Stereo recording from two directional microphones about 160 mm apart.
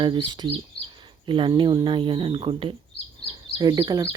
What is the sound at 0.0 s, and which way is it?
Speech, 30° right (ahead or behind).